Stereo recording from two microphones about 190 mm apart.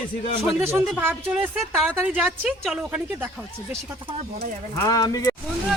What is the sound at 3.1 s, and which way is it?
Speech, 10° right (ahead or behind).